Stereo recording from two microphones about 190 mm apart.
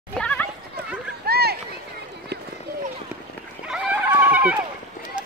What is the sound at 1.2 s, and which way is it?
Run, 55° right (ahead or behind).